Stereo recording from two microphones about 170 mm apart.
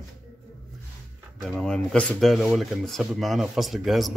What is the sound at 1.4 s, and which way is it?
Speech, 5° left (ahead or behind).